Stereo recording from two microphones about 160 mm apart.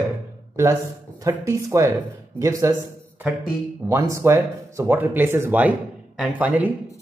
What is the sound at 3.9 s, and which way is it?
Speech, 20° right (ahead or behind).